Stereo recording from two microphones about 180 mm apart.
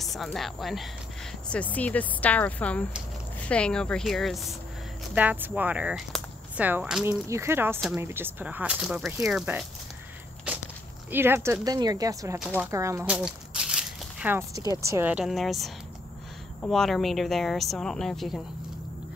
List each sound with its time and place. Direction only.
0.0 s a woman's voice: centre (ahead or behind)
11.1 s speech: 10° right (ahead or behind)
12.4 s a woman's voice: 5° right (ahead or behind)
12.7 s a woman's voice: 15° right (ahead or behind); by 18.4 s centre (ahead or behind)